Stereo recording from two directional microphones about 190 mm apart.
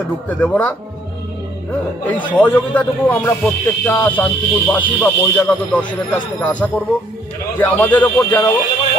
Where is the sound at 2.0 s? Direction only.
10° left (ahead or behind).